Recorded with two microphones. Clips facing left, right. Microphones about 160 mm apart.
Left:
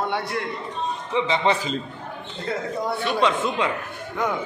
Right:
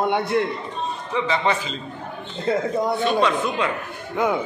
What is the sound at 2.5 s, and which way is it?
Speech, 25° right (ahead or behind).